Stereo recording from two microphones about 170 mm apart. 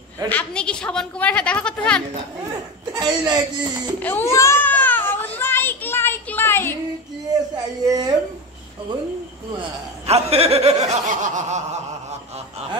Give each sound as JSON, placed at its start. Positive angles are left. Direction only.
{"t": 0.3, "sound": "a woman's voice", "side_deg": 5}
{"t": 2.9, "sound": "speech", "side_deg": -25}
{"t": 4.0, "sound": "children playing", "side_deg": 15}
{"t": 7.8, "sound": "a woman's voice", "side_deg": -20}
{"t": 10.0, "sound": "snicker", "side_deg": -35}